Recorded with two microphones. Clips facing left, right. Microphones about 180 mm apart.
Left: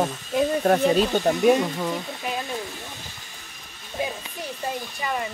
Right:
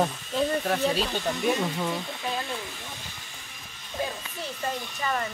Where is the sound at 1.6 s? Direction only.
10° left (ahead or behind).